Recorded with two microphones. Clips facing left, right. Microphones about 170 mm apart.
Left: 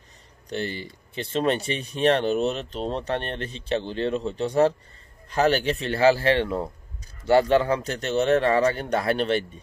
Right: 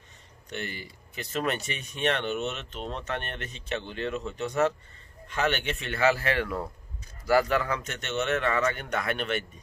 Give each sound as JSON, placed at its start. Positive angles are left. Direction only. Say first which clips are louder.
{"t": 0.5, "sound": "speech", "louder": "left 7 dB", "side_deg": 30}